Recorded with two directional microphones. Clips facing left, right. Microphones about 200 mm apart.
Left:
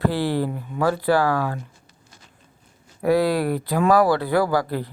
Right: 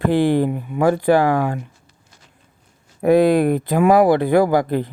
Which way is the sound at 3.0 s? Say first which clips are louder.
Right 6 dB; 20° right (ahead or behind).